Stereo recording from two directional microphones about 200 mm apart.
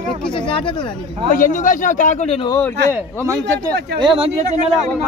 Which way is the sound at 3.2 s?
15° right (ahead or behind).